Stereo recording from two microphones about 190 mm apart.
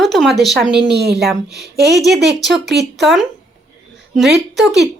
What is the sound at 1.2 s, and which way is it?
Speech, centre (ahead or behind).